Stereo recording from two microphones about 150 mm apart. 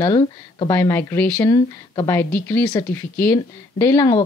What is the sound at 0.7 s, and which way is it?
Speech, 15° left (ahead or behind).